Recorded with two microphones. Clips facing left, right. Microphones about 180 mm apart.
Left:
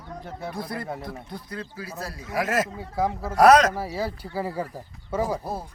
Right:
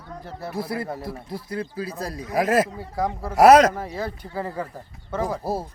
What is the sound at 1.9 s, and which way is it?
Speech, 15° right (ahead or behind).